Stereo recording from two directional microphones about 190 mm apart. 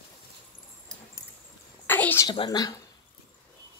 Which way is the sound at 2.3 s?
25° left (ahead or behind).